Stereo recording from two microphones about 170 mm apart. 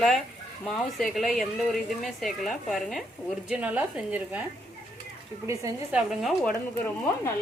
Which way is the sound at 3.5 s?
10° right (ahead or behind).